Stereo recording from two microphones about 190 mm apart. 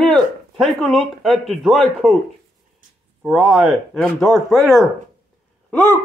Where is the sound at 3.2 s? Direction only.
5° right (ahead or behind).